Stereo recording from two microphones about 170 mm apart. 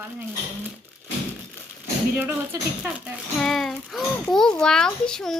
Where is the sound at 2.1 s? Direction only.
10° right (ahead or behind).